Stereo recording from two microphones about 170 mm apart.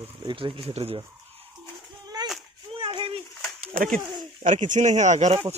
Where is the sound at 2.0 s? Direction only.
25° right (ahead or behind).